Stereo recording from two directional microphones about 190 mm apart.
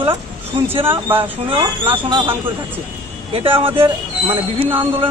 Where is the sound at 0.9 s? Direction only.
10° right (ahead or behind).